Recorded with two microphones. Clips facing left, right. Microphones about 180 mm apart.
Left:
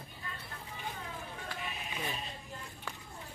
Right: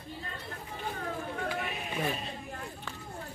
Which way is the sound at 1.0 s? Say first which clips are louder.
Right 9 dB; 60° right (ahead or behind).